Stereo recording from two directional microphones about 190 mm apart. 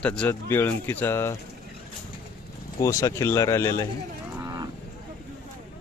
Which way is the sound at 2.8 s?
15° left (ahead or behind).